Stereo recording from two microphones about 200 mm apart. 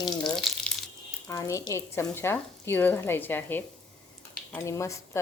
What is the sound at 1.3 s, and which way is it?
Speech, 15° left (ahead or behind).